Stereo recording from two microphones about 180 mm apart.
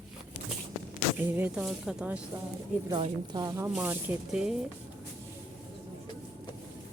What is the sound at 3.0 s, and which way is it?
Speech, 25° right (ahead or behind).